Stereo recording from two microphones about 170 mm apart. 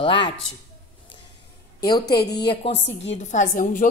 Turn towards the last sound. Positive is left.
turn(degrees=50)  # may be behind; listen again after turning